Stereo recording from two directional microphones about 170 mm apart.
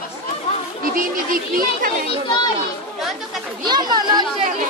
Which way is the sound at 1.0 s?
55° right (ahead or behind).